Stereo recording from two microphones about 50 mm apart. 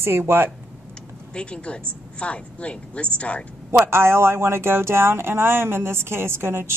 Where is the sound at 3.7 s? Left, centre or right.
Right.